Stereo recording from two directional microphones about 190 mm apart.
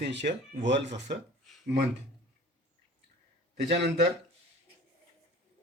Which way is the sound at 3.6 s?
65° right (ahead or behind).